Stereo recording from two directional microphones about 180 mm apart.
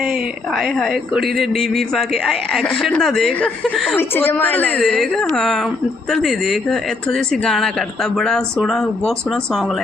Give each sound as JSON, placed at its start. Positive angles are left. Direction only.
{"t": 0.0, "sound": "speech", "side_deg": 0}
{"t": 3.9, "sound": "a woman's voice", "side_deg": 10}